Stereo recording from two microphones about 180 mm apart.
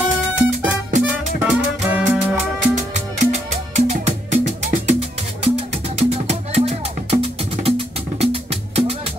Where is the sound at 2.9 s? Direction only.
40° right (ahead or behind).